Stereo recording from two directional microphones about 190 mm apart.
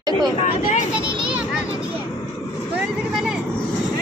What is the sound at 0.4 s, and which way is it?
Speech, 35° left (ahead or behind).